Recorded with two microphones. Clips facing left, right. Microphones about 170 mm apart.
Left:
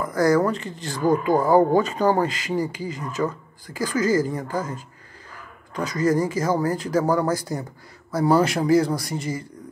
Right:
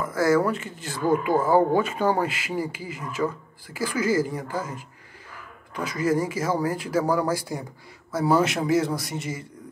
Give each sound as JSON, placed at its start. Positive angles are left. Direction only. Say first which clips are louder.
{"t": 0.1, "sound": "speech", "louder": "left 2 dB", "side_deg": -5}
{"t": 1.3, "sound": "speech", "louder": "left 3 dB", "side_deg": 15}
{"t": 1.9, "sound": "speech", "louder": "left 3 dB", "side_deg": 35}
{"t": 2.1, "sound": "a woman's voice", "louder": "left 3 dB", "side_deg": -10}